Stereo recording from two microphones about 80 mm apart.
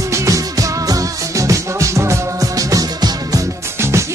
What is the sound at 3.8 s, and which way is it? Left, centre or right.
Music, right.